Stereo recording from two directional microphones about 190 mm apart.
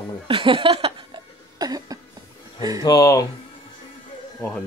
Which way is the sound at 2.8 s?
15° left (ahead or behind).